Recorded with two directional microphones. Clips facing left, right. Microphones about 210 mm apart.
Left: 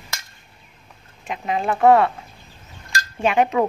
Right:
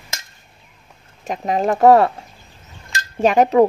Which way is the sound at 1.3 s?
40° right (ahead or behind).